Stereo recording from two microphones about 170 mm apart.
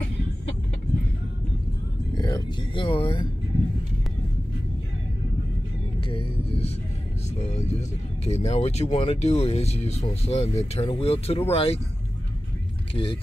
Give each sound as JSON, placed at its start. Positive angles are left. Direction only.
{"t": 2.1, "sound": "speech", "side_deg": 25}
{"t": 5.9, "sound": "speech", "side_deg": 35}
{"t": 12.9, "sound": "speech", "side_deg": 35}